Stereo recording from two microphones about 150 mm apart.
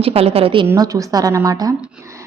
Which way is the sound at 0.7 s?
25° right (ahead or behind).